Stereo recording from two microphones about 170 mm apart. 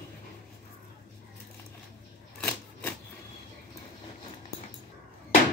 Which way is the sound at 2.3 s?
10° left (ahead or behind).